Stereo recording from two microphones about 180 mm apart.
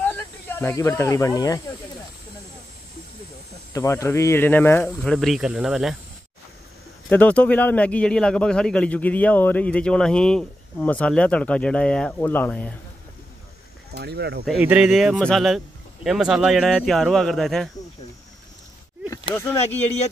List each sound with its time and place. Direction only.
0.0 s speech: 10° left (ahead or behind)
3.7 s speech: 15° left (ahead or behind); by 5.9 s centre (ahead or behind)
7.1 s speech: 10° left (ahead or behind)
13.9 s speech: 65° right (ahead or behind)
14.6 s speech: 5° right (ahead or behind)
19.3 s speech: 15° left (ahead or behind)